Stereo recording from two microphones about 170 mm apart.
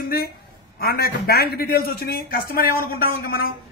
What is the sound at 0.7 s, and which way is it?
A man's voice, 65° left (ahead or behind).